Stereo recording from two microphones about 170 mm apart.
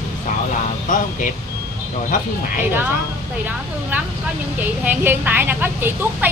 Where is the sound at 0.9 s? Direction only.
50° left (ahead or behind).